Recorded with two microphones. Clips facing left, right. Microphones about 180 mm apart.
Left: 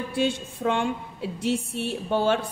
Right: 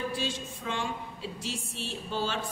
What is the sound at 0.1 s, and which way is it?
A woman's voice, 60° left (ahead or behind).